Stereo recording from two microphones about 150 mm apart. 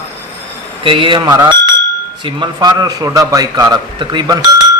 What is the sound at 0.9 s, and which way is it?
A man's voice, 35° right (ahead or behind).